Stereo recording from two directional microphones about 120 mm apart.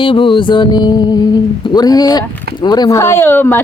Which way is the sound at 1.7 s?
35° left (ahead or behind).